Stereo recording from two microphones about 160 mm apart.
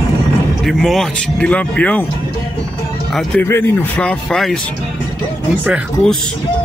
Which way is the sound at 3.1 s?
5° left (ahead or behind).